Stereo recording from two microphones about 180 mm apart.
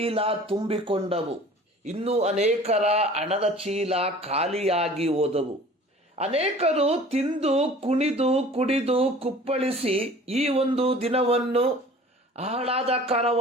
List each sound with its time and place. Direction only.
0.0 s speech: 30° right (ahead or behind)